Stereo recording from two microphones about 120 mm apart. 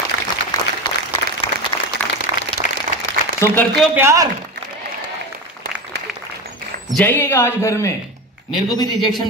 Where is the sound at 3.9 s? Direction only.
25° right (ahead or behind).